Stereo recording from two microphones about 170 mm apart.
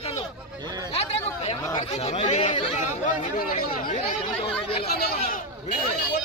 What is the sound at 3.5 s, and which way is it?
Chatter, 45° left (ahead or behind).